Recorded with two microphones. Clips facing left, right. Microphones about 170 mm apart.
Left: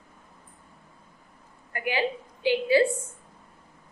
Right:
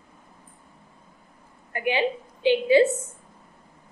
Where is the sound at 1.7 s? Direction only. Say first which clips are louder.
Right 3 dB; 20° right (ahead or behind).